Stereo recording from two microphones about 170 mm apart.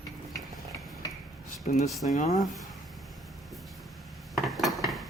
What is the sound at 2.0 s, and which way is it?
Speech, 45° left (ahead or behind).